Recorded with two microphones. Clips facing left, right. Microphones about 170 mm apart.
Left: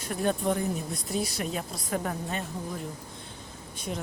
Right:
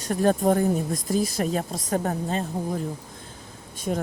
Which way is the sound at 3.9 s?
55° right (ahead or behind).